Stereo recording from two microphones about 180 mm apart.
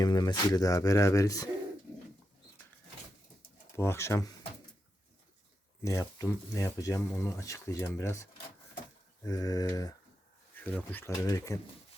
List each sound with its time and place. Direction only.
0.0 s speech: 25° left (ahead or behind)
3.8 s speech: 15° left (ahead or behind)
5.8 s speech: 15° left (ahead or behind)
10.5 s speech: 10° left (ahead or behind)